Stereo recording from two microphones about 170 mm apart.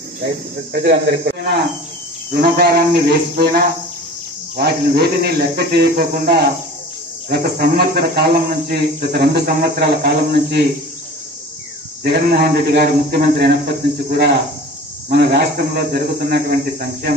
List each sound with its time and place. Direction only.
0.7 s speech: 75° right (ahead or behind)
2.3 s cricket: 65° right (ahead or behind)
4.6 s speech: 70° right (ahead or behind)
12.0 s speech: 70° right (ahead or behind)
14.0 s cricket: 65° right (ahead or behind)
15.0 s speech: 70° right (ahead or behind)